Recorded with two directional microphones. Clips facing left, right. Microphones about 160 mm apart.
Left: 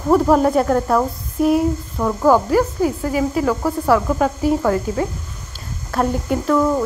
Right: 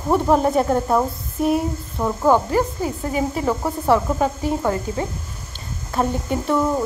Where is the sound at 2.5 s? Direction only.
5° left (ahead or behind).